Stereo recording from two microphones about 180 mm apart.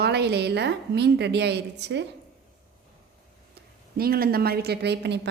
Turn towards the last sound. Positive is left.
turn(degrees=-70)  # may be behind; listen again after turning